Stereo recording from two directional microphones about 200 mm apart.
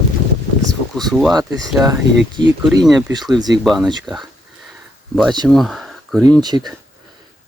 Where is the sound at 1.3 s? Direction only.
20° right (ahead or behind).